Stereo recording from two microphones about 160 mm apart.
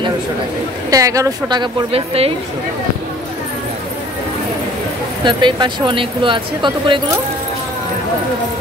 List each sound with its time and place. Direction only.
0.8 s speech: 20° right (ahead or behind); by 2.3 s 40° right (ahead or behind)
5.2 s speech: 30° right (ahead or behind)